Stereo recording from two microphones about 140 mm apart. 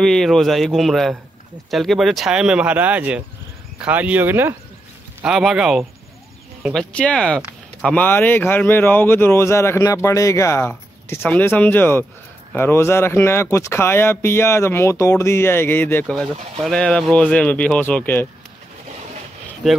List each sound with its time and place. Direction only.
0.0 s speech: centre (ahead or behind); by 4.6 s 15° right (ahead or behind)
5.2 s speech: 5° right (ahead or behind); by 18.2 s 15° left (ahead or behind)